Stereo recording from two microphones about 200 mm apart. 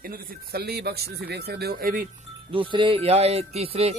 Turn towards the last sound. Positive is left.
turn(degrees=-30)  # may be behind; listen again after turning